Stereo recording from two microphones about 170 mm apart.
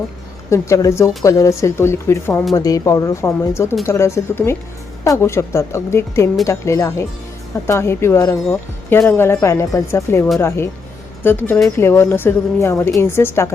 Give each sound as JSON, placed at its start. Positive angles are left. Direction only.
{"t": 0.5, "sound": "speech", "side_deg": 15}